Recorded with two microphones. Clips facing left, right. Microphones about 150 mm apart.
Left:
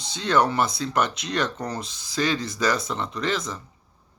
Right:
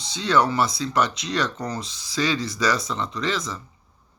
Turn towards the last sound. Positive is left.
turn(degrees=55)  # may be behind; listen again after turning